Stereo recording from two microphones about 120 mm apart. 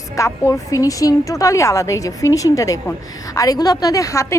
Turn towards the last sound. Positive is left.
turn(degrees=25)  # may be behind; listen again after turning